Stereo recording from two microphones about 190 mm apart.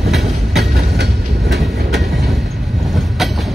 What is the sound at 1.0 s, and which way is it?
Train, 65° right (ahead or behind).